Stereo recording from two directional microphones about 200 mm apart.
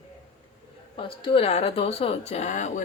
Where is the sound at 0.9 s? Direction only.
25° left (ahead or behind).